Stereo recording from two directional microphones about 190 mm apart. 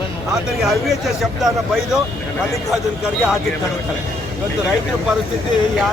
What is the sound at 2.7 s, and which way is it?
Speech, 5° right (ahead or behind).